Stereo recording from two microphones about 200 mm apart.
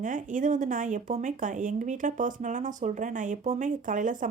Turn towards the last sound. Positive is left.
turn(degrees=-40)  # may be behind; listen again after turning